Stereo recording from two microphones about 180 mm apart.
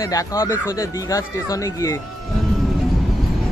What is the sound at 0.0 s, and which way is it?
Speech, 20° left (ahead or behind).